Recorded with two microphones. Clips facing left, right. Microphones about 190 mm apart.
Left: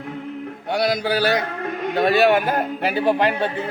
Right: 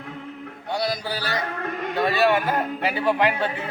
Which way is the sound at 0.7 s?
80° left.